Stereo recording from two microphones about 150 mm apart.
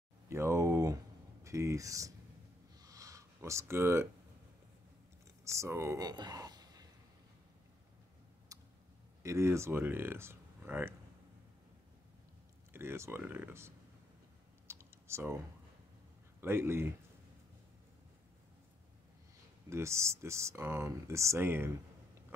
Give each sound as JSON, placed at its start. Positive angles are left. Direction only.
{"t": 0.3, "sound": "speech", "side_deg": -20}
{"t": 2.8, "sound": "a sound", "side_deg": -20}
{"t": 5.4, "sound": "speech", "side_deg": -20}
{"t": 8.5, "sound": "tick", "side_deg": -20}
{"t": 9.2, "sound": "speech", "side_deg": -20}
{"t": 12.7, "sound": "speech", "side_deg": -15}
{"t": 14.7, "sound": "typing", "side_deg": -15}
{"t": 16.3, "sound": "speech", "side_deg": -15}
{"t": 19.7, "sound": "speech", "side_deg": -20}